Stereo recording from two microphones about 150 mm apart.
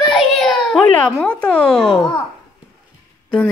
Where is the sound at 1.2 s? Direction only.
10° left (ahead or behind).